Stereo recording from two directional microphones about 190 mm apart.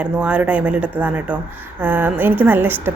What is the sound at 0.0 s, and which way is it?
A woman's voice, 5° right (ahead or behind).